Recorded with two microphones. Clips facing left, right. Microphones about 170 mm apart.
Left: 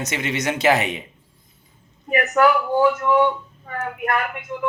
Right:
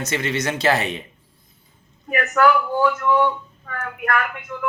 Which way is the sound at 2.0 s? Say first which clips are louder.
Left 1 dB; 20° left (ahead or behind).